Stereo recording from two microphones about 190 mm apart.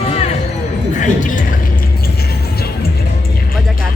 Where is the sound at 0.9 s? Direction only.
40° left (ahead or behind).